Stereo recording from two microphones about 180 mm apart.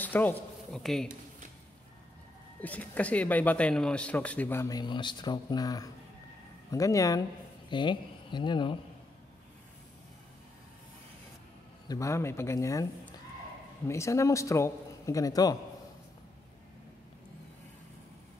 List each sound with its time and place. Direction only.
0.0 s speech: 10° left (ahead or behind)
2.6 s speech: 10° left (ahead or behind); by 8.7 s 25° left (ahead or behind)
11.9 s speech: 15° left (ahead or behind)